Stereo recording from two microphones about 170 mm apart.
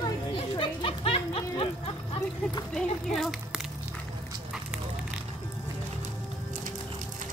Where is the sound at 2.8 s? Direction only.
5° left (ahead or behind).